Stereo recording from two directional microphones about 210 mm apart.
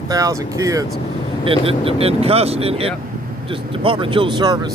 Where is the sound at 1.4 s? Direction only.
25° right (ahead or behind).